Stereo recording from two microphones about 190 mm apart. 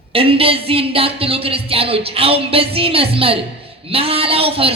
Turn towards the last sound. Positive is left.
turn(degrees=-30)  # may be behind; listen again after turning